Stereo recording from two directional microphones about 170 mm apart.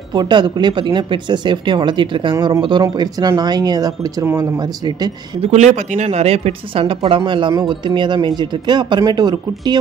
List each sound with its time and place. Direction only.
0.1 s speech: 25° right (ahead or behind)
5.4 s speech: 40° right (ahead or behind); by 9.8 s 25° right (ahead or behind)